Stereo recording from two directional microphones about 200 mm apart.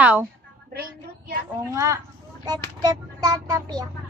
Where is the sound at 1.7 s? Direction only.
15° right (ahead or behind).